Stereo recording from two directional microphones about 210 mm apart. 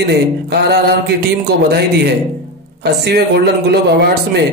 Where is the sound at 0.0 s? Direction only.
50° right (ahead or behind).